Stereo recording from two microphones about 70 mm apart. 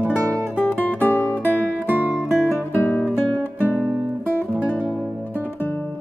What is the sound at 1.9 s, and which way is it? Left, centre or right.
Music, right.